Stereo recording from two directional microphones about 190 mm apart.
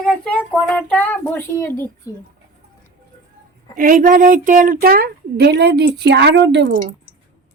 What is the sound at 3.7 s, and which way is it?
A woman's voice, 45° right (ahead or behind).